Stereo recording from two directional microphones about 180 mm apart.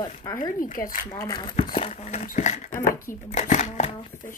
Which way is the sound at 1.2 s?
25° left (ahead or behind).